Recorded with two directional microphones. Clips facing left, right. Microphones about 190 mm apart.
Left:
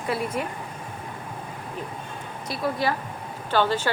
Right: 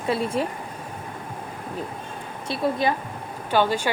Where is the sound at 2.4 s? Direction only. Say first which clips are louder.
Right 3 dB; 25° right (ahead or behind).